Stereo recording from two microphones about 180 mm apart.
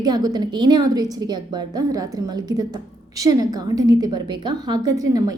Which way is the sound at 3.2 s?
20° right (ahead or behind).